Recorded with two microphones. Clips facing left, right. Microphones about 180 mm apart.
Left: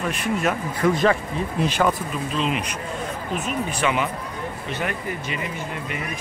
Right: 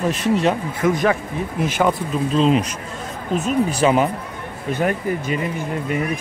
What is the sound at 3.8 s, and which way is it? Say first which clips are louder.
Speech: right 6 dB; 35° right (ahead or behind).